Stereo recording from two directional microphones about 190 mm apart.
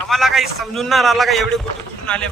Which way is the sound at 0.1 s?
Centre (ahead or behind).